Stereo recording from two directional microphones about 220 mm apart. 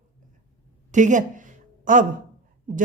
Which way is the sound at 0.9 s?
35° right (ahead or behind).